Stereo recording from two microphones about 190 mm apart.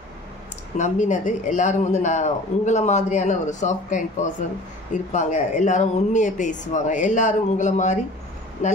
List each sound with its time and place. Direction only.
0.7 s a man's voice: 40° left (ahead or behind)